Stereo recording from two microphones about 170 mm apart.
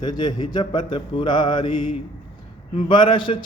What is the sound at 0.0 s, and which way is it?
Speech, 25° left (ahead or behind).